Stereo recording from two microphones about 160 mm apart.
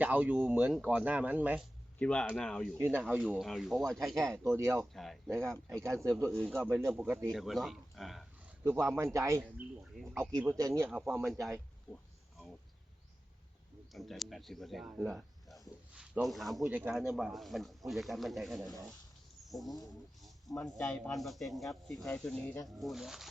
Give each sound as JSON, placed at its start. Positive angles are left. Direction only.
{"t": 0.0, "sound": "speech", "side_deg": -10}
{"t": 2.0, "sound": "speech", "side_deg": 5}
{"t": 2.7, "sound": "speech", "side_deg": -15}
{"t": 4.4, "sound": "speech", "side_deg": -15}
{"t": 4.9, "sound": "speech", "side_deg": 0}
{"t": 5.3, "sound": "speech", "side_deg": -15}
{"t": 6.2, "sound": "speech", "side_deg": 5}
{"t": 6.7, "sound": "speech", "side_deg": -15}
{"t": 7.3, "sound": "speech", "side_deg": 0}
{"t": 8.6, "sound": "speech", "side_deg": -15}
{"t": 11.3, "sound": "speech", "side_deg": 0}
{"t": 13.9, "sound": "a man's voice", "side_deg": 0}